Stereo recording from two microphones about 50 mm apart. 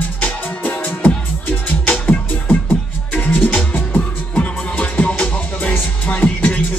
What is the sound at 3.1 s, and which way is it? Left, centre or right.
Music, left.